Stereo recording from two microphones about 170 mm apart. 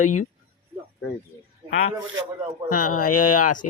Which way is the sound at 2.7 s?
60° left (ahead or behind).